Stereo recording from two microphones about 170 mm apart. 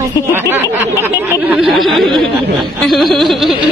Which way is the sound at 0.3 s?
15° right (ahead or behind).